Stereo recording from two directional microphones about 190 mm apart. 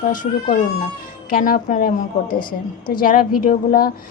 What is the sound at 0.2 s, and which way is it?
A woman's voice, 45° left (ahead or behind).